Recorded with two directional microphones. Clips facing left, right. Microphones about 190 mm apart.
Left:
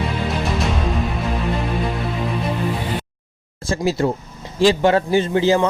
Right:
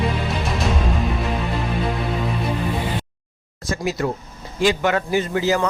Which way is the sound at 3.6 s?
30° left (ahead or behind).